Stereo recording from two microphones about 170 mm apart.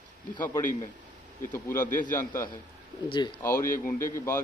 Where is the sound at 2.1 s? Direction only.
10° left (ahead or behind).